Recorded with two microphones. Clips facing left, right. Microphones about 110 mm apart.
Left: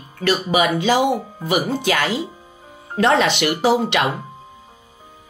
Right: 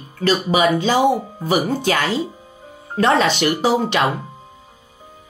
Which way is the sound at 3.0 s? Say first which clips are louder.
Even; 35° right (ahead or behind).